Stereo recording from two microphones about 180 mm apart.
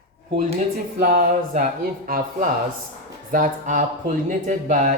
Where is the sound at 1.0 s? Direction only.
50° right (ahead or behind).